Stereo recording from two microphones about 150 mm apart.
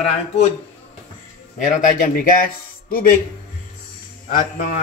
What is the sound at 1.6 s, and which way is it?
A man's voice, 60° left (ahead or behind).